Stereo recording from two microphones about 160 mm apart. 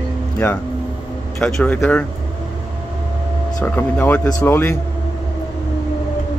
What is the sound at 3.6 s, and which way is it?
Speech, 10° left (ahead or behind).